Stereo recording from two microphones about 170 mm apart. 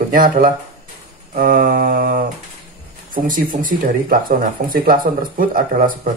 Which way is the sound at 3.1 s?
55° right (ahead or behind).